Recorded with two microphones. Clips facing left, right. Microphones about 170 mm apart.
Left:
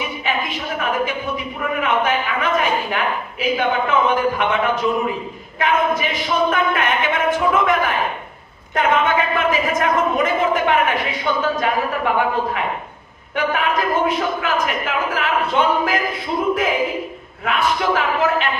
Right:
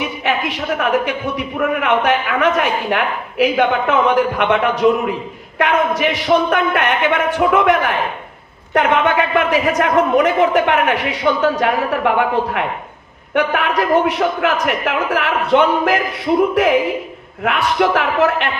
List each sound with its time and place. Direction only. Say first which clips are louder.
0.2 s a woman's voice: right 4 dB; 70° right (ahead or behind)
13.3 s a woman's voice: right 3 dB; 70° right (ahead or behind)
17.4 s a woman's voice: right 4 dB; 65° right (ahead or behind)